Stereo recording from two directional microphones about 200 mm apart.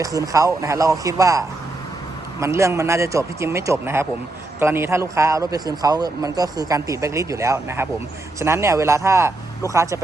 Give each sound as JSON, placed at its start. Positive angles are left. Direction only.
{"t": 0.0, "sound": "a man's voice", "side_deg": -15}